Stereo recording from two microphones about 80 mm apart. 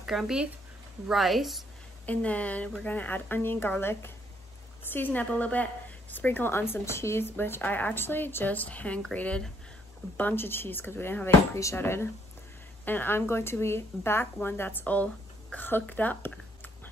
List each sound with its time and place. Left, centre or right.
0.0 s a woman's voice: centre
2.0 s a woman's voice: centre